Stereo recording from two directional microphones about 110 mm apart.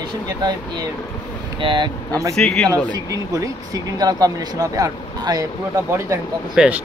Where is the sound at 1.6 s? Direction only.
50° right (ahead or behind).